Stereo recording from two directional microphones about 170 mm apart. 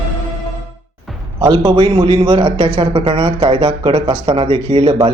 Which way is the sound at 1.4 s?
25° right (ahead or behind).